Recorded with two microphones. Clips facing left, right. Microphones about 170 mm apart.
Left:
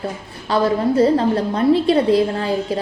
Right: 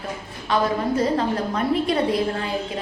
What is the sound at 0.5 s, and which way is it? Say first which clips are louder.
A woman's voice: left 5 dB; 30° left (ahead or behind).